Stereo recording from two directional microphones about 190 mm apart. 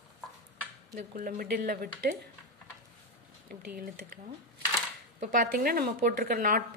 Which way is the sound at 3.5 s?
50° right (ahead or behind).